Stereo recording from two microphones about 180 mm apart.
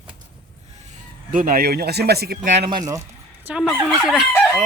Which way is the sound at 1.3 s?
50° right (ahead or behind).